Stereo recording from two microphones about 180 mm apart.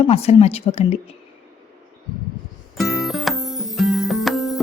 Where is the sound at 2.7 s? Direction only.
Centre (ahead or behind).